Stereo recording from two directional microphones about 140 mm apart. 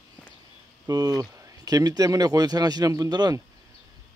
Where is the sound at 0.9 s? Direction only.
25° right (ahead or behind).